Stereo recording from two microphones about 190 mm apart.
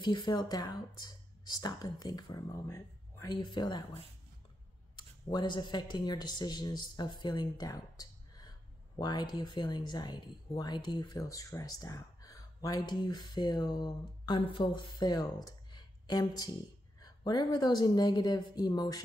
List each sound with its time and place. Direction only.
0.0 s speech: 25° left (ahead or behind)